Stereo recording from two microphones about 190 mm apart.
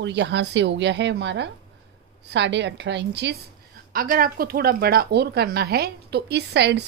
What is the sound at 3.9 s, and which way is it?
Speech, 50° right (ahead or behind).